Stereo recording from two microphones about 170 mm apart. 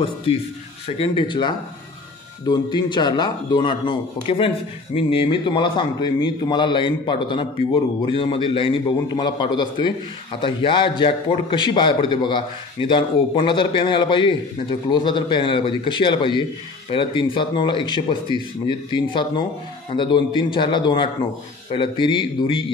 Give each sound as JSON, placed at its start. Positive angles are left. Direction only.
{"t": 0.8, "sound": "a man's voice", "side_deg": 35}